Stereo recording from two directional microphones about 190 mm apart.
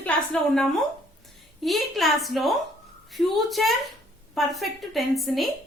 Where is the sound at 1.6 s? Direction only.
Centre (ahead or behind).